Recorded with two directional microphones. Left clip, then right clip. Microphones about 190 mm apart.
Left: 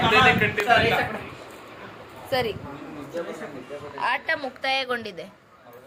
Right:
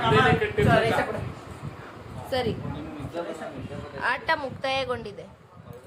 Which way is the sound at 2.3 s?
5° left (ahead or behind).